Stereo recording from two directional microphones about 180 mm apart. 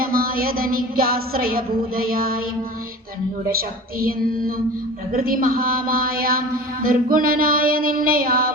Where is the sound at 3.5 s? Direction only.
55° right (ahead or behind).